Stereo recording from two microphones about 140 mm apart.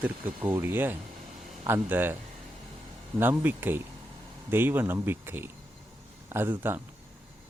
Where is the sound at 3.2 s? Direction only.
15° right (ahead or behind).